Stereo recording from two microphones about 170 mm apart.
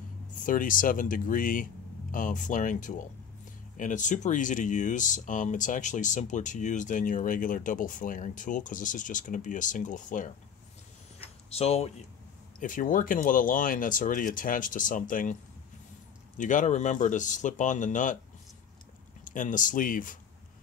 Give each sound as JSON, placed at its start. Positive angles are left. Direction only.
{"t": 0.4, "sound": "speech", "side_deg": 50}
{"t": 11.5, "sound": "speech", "side_deg": 35}
{"t": 12.5, "sound": "speech", "side_deg": 50}
{"t": 16.3, "sound": "speech", "side_deg": 50}
{"t": 19.2, "sound": "speech", "side_deg": 50}